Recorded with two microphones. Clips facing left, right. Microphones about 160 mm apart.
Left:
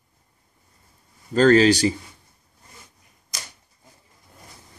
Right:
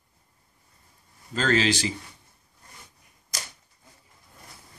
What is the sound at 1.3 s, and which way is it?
Speech, 40° left (ahead or behind).